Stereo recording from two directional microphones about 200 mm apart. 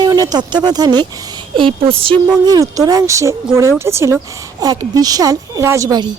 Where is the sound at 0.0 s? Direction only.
20° right (ahead or behind).